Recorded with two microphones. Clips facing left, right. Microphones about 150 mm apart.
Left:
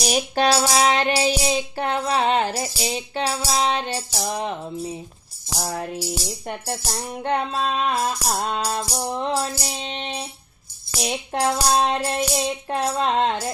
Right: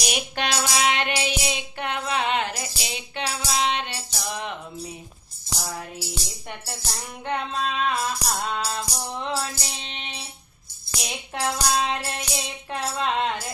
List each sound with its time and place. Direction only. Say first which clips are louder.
0.0 s music: left 7 dB; 35° left (ahead or behind)
5.5 s music: left 7 dB; 45° left (ahead or behind)